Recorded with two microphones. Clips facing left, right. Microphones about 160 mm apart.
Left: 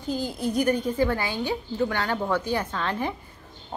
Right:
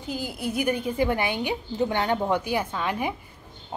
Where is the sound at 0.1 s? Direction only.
10° right (ahead or behind).